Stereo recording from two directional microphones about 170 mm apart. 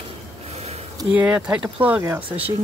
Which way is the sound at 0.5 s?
35° right (ahead or behind).